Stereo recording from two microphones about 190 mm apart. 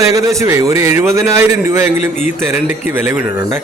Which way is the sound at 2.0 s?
40° left (ahead or behind).